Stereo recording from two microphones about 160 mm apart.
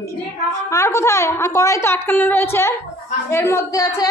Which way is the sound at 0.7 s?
15° left (ahead or behind).